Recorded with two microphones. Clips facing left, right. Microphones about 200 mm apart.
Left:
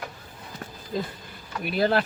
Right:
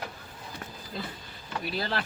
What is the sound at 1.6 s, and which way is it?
Speech, 55° left (ahead or behind).